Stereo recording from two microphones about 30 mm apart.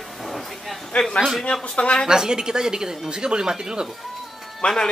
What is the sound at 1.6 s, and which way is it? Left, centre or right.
Speech, left.